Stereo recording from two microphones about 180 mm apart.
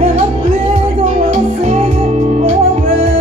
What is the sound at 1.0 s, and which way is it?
Music, 40° right (ahead or behind).